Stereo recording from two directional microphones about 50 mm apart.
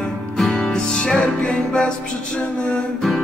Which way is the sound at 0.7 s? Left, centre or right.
Centre.